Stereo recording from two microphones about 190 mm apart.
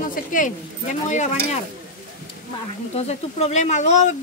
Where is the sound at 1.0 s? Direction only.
40° left (ahead or behind).